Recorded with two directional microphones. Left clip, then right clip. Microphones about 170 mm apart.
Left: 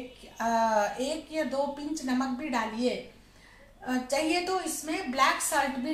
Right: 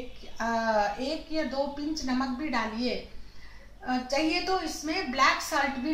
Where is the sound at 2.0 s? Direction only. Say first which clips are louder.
Left 1 dB; 15° left (ahead or behind).